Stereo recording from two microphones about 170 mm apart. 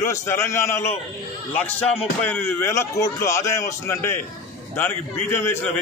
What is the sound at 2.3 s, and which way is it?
A man's voice, 15° left (ahead or behind).